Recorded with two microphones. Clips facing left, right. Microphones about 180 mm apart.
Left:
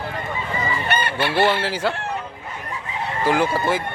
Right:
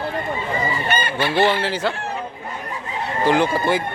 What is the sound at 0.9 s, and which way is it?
Fowl, 65° left (ahead or behind).